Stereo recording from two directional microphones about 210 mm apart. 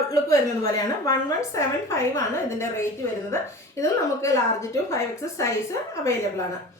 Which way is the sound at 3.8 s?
15° left (ahead or behind).